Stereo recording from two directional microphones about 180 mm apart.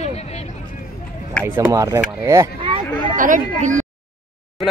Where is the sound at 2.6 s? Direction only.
25° right (ahead or behind).